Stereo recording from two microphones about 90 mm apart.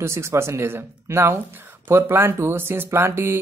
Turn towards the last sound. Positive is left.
turn(degrees=-25)  # may be behind; listen again after turning